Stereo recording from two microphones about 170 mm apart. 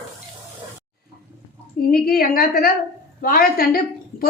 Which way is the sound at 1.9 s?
60° left (ahead or behind).